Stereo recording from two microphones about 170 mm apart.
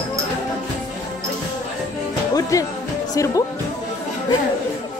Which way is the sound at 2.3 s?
20° left (ahead or behind).